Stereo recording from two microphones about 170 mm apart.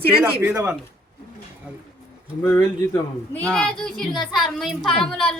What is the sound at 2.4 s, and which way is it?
Speech, 20° left (ahead or behind).